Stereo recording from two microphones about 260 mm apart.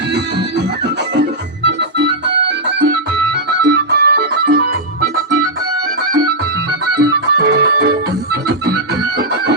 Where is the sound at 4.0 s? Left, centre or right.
Right.